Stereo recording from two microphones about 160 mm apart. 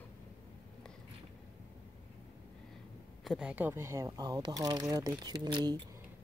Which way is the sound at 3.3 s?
5° right (ahead or behind).